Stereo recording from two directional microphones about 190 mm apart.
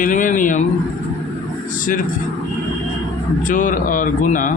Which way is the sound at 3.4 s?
45° left (ahead or behind).